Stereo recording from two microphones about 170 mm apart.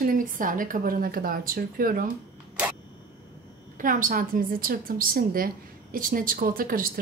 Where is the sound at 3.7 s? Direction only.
50° right (ahead or behind).